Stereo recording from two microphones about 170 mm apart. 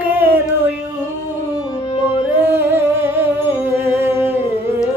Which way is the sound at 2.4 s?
15° right (ahead or behind).